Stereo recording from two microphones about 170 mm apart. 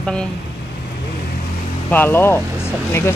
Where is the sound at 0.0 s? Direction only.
5° left (ahead or behind).